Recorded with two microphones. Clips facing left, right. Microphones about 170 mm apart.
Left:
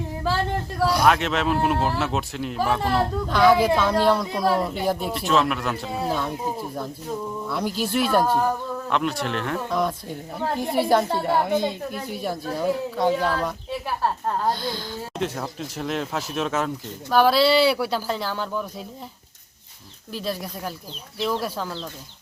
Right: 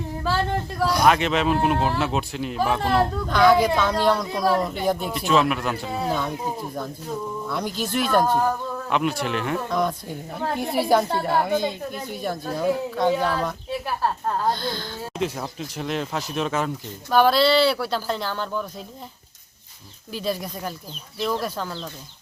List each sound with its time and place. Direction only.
0.8 s speech: 5° left (ahead or behind)
14.4 s speech: 10° left (ahead or behind)
15.2 s speech: centre (ahead or behind)
20.1 s speech: centre (ahead or behind)